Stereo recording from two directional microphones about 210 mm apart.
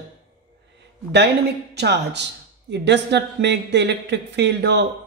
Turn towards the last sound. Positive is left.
turn(degrees=-55)  # may be behind; listen again after turning